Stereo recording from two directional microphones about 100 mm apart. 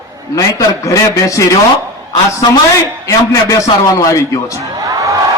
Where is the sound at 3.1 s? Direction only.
35° left (ahead or behind).